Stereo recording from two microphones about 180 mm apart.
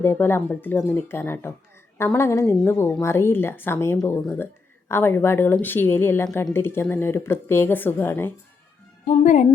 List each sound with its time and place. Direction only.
0.0 s a woman's voice: 15° left (ahead or behind)
9.0 s a woman's voice: 40° left (ahead or behind)